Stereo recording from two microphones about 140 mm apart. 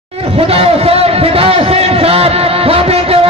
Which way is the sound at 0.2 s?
45° right (ahead or behind).